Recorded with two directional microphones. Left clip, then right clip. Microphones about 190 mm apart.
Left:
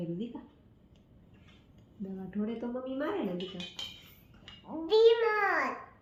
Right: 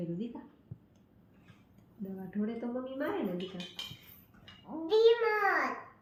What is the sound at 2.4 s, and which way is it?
Speech, 10° left (ahead or behind).